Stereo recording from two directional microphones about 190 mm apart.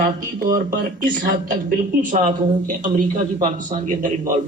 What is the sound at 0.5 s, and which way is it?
Speech, 45° right (ahead or behind).